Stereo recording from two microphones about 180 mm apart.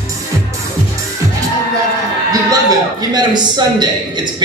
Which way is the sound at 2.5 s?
20° right (ahead or behind).